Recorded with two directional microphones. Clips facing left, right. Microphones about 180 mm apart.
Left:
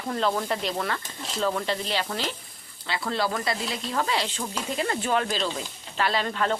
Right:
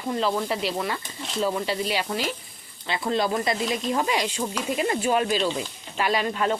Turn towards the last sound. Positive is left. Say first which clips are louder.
# right 2 dB
turn(degrees=-15)  # may be behind; listen again after turning